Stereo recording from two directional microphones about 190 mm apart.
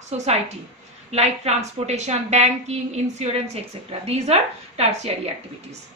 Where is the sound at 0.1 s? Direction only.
35° right (ahead or behind).